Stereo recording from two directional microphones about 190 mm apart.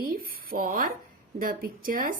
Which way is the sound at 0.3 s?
50° right (ahead or behind).